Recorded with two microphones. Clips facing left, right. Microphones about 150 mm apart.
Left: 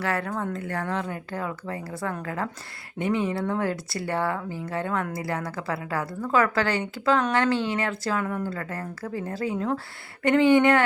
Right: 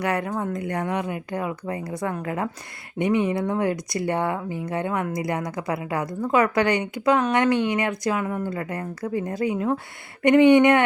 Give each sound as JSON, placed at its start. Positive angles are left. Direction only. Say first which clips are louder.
{"t": 0.0, "sound": "a woman's voice", "louder": "right 3 dB", "side_deg": -15}